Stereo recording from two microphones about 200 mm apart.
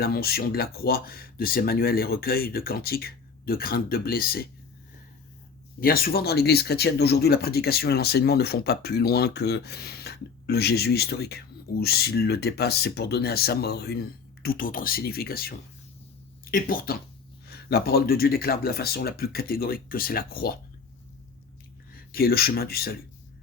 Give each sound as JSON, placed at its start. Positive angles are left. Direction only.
{"t": 0.0, "sound": "speech", "side_deg": 50}
{"t": 5.8, "sound": "speech", "side_deg": 45}
{"t": 21.9, "sound": "speech", "side_deg": 50}